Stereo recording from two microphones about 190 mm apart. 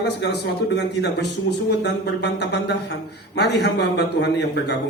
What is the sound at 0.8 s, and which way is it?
Speech, 65° left (ahead or behind).